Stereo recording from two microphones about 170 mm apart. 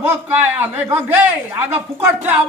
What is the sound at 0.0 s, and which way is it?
A man's voice, 10° right (ahead or behind).